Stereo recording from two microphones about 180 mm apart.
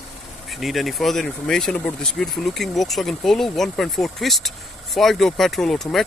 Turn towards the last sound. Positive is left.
turn(degrees=0)  # may be behind; listen again after turning